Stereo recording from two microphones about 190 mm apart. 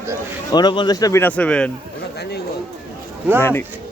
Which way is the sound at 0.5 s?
25° left (ahead or behind).